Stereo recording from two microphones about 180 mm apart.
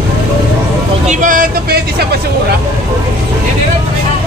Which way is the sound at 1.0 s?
45° right (ahead or behind).